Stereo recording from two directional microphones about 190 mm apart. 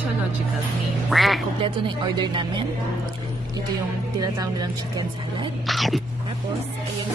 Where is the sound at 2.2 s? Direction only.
25° right (ahead or behind).